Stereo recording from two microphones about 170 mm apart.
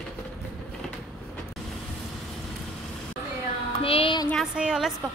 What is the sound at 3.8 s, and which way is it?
Music, 30° left (ahead or behind).